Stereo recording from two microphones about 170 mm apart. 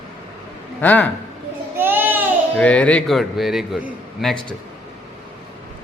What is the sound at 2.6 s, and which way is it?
A man's voice, 5° left (ahead or behind).